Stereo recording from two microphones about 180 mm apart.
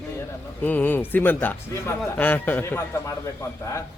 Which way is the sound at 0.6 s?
10° left (ahead or behind).